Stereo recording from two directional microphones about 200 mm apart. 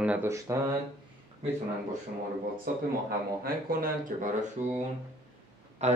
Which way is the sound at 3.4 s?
45° right (ahead or behind).